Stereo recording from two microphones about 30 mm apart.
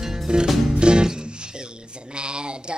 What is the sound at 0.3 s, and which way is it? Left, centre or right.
Music, right.